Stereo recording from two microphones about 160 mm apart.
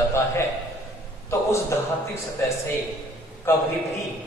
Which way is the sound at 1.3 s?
20° left (ahead or behind).